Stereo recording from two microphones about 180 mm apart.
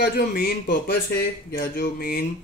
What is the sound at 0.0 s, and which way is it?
Speech, 65° left (ahead or behind).